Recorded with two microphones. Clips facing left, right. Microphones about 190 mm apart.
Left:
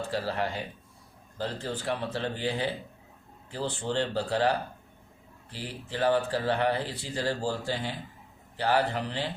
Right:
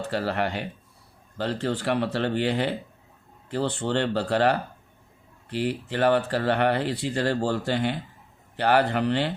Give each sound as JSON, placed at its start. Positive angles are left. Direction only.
{"t": 0.1, "sound": "speech", "side_deg": -65}